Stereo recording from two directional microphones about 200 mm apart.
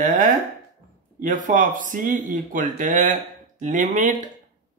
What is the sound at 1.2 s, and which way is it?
Speech, 40° right (ahead or behind).